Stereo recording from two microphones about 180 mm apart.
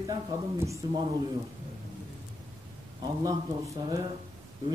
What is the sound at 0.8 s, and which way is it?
Speech, 20° right (ahead or behind).